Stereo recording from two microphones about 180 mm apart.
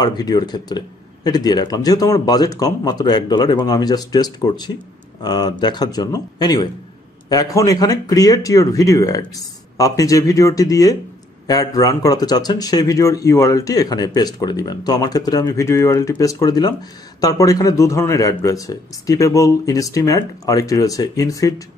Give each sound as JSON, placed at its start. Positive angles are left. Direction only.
{"t": 0.0, "sound": "speech", "side_deg": 20}